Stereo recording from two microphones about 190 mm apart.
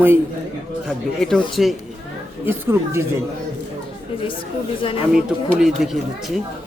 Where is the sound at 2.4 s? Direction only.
10° right (ahead or behind).